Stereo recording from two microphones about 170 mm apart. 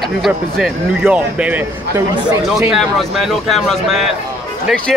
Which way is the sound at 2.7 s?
Centre (ahead or behind).